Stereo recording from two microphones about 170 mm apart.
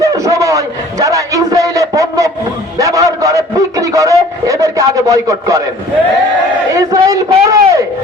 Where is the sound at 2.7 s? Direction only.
20° right (ahead or behind).